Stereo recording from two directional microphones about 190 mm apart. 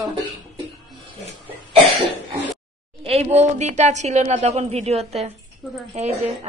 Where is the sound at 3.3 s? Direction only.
35° right (ahead or behind).